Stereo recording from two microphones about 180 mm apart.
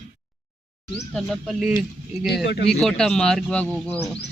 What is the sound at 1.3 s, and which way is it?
Speech, centre (ahead or behind).